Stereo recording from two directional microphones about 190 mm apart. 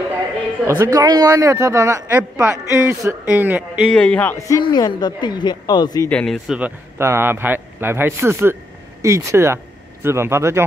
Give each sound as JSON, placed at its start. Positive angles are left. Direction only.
{"t": 0.7, "sound": "a man's voice", "side_deg": -15}
{"t": 3.9, "sound": "speech", "side_deg": 5}
{"t": 6.0, "sound": "a man's voice", "side_deg": 5}